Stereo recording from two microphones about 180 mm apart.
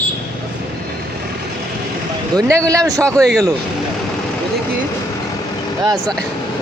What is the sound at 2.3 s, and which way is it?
Speech, 15° right (ahead or behind).